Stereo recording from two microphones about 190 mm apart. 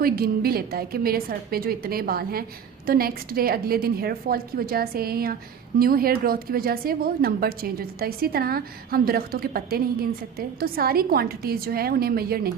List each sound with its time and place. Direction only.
0.0 s speech: 50° right (ahead or behind)